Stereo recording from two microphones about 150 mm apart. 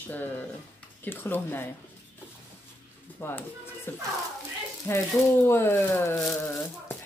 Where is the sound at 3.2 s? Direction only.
15° left (ahead or behind).